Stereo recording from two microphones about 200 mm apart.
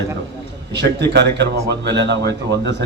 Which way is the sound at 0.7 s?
60° right (ahead or behind).